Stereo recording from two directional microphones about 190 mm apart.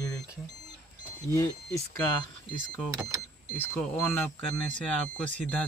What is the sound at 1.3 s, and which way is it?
Speech, 15° left (ahead or behind).